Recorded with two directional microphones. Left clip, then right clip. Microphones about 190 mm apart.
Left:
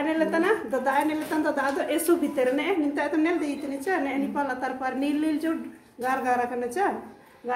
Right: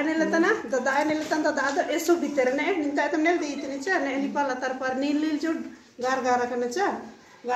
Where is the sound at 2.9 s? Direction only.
30° left (ahead or behind).